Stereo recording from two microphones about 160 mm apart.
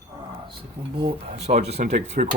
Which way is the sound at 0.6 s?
35° right (ahead or behind).